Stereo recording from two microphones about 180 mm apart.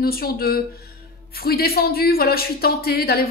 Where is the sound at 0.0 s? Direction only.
60° left (ahead or behind).